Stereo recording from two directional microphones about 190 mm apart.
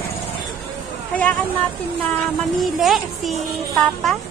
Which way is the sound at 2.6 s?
Centre (ahead or behind).